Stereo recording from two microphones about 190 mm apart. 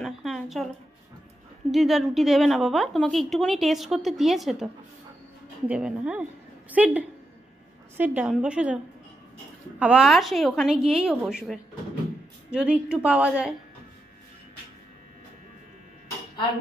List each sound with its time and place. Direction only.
0.0 s a woman's voice: centre (ahead or behind)
1.7 s a woman's voice: centre (ahead or behind)
5.7 s a woman's voice: 5° right (ahead or behind)
9.8 s a woman's voice: 5° right (ahead or behind)